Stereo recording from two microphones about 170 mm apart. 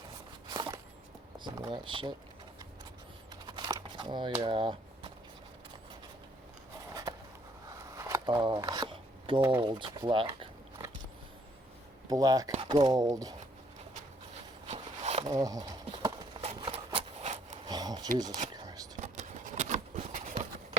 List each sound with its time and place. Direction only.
0.5 s walk: 25° right (ahead or behind)
1.5 s speech: 25° right (ahead or behind)
3.4 s crumpling: 25° right (ahead or behind)
4.4 s speech: 30° right (ahead or behind)
7.7 s speech: 20° right (ahead or behind)
12.0 s speech: 20° right (ahead or behind)
14.7 s a sound: 40° right (ahead or behind)
15.2 s speech: 20° right (ahead or behind)
15.9 s clip-clop: 30° right (ahead or behind)
16.6 s a sound: 30° right (ahead or behind)
17.7 s a sound: 25° right (ahead or behind)
18.5 s chopping: 25° right (ahead or behind)
18.9 s a sound: 45° right (ahead or behind)